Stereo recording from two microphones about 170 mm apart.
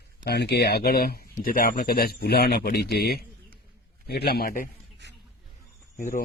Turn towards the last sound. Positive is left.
turn(degrees=50)  # may be behind; listen again after turning